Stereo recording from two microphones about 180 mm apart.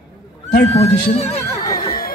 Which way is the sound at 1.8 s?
55° left (ahead or behind).